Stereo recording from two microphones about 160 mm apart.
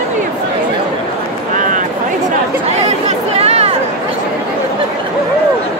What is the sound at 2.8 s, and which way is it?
Chatter, 40° right (ahead or behind).